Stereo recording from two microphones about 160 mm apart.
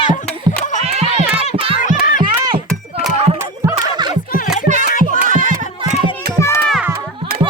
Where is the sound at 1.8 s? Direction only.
55° left (ahead or behind).